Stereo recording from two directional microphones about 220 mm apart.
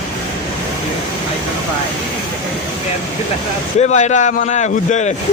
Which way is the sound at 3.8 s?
30° left (ahead or behind).